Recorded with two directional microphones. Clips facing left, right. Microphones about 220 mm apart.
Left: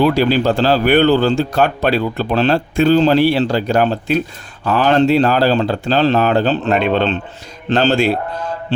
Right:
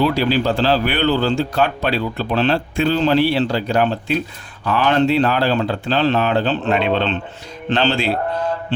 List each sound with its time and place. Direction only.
0.0 s a man's voice: 50° left (ahead or behind)